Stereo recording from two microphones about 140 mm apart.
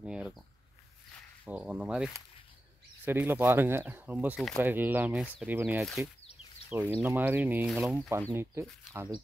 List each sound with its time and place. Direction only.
0.0 s a sound: 5° right (ahead or behind)
1.4 s speech: 10° right (ahead or behind)
3.1 s speech: 15° right (ahead or behind)
6.9 s speech: 15° right (ahead or behind)
7.7 s speech: centre (ahead or behind)
8.1 s speech: 20° right (ahead or behind)